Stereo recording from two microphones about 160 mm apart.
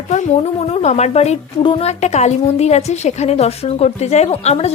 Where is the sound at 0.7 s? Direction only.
40° left (ahead or behind).